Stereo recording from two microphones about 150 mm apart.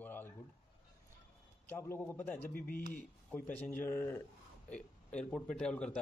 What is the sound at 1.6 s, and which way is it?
A man's voice, 15° left (ahead or behind).